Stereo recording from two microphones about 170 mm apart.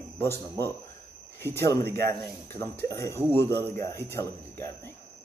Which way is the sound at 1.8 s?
70° right (ahead or behind).